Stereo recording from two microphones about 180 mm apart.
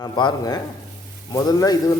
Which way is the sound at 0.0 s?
25° left (ahead or behind).